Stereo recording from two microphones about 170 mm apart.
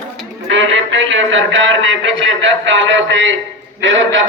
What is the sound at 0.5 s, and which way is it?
A man's voice, 90° right.